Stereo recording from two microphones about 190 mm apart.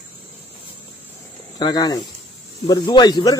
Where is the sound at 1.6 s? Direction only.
20° left (ahead or behind).